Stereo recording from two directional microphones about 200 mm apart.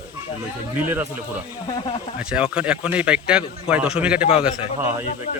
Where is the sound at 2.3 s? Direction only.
5° right (ahead or behind).